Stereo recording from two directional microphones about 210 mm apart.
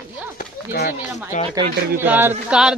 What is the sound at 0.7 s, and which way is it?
Speech, 45° left (ahead or behind).